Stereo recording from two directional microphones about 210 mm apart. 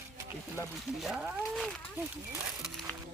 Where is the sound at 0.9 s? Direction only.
5° right (ahead or behind).